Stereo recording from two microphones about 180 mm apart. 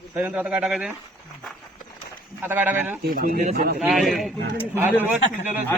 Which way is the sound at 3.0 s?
55° right (ahead or behind).